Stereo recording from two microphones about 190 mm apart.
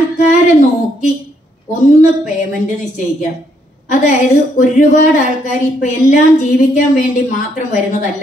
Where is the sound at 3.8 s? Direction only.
40° left (ahead or behind).